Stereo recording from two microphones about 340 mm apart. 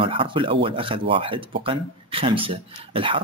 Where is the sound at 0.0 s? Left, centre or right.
Centre.